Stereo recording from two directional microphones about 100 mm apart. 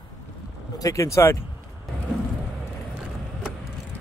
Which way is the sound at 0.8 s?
35° left (ahead or behind).